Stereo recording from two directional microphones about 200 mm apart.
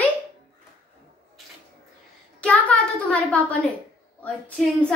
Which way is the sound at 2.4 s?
5° left (ahead or behind).